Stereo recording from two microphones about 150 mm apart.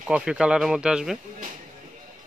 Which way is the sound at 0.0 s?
5° right (ahead or behind).